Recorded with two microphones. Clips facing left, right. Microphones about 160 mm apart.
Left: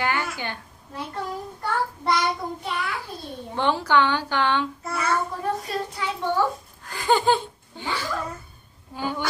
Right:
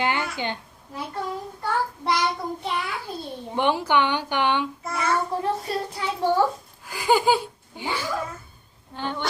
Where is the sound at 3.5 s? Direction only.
15° right (ahead or behind).